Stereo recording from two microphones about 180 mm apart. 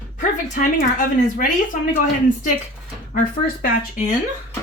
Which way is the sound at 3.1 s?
50° left (ahead or behind).